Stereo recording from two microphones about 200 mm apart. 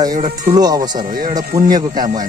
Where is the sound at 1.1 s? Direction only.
40° right (ahead or behind).